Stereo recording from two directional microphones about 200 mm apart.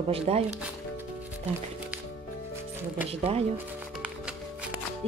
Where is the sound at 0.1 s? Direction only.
30° right (ahead or behind).